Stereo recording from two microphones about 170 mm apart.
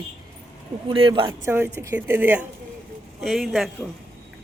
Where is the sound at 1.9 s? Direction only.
10° right (ahead or behind).